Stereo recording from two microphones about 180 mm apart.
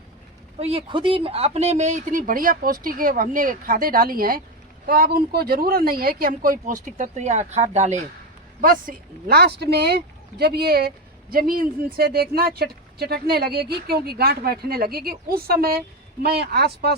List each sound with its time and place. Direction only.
0.6 s speech: 30° right (ahead or behind)
8.6 s speech: 55° right (ahead or behind)